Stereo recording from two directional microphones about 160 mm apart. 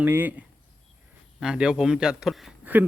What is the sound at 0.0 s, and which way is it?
A man's voice, 10° right (ahead or behind).